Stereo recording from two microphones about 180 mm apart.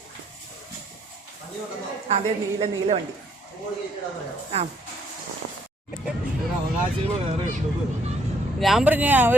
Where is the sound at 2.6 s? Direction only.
35° right (ahead or behind).